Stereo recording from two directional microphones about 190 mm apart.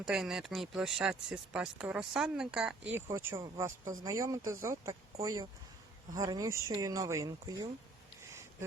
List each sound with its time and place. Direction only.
0.0 s speech: centre (ahead or behind); by 7.7 s 20° right (ahead or behind)